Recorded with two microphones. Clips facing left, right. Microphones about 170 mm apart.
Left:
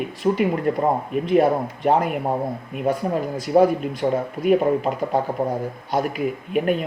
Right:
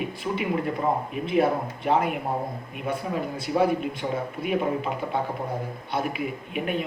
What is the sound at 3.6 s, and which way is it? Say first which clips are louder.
Speech: left 7 dB; 40° left (ahead or behind).